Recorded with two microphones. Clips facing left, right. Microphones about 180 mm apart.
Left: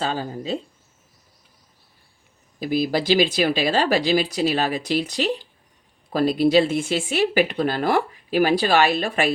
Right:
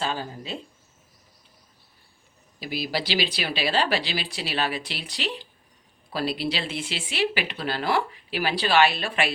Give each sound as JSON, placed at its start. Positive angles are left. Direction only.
{"t": 0.0, "sound": "speech", "side_deg": 40}
{"t": 2.6, "sound": "speech", "side_deg": 50}